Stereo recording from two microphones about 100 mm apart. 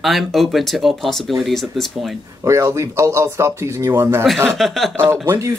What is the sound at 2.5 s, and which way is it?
Speech, 30° right (ahead or behind).